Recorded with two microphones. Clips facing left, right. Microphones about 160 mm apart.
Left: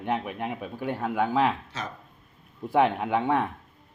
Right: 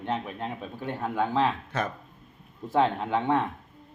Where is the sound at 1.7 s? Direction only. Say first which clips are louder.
Right 6 dB; 55° right (ahead or behind).